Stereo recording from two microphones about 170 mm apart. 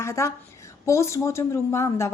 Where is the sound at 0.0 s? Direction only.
15° left (ahead or behind).